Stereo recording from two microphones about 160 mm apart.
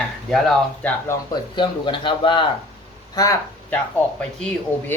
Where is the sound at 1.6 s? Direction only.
30° left (ahead or behind).